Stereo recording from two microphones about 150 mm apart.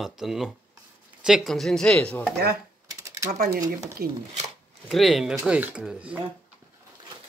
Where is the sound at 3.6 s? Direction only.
25° right (ahead or behind).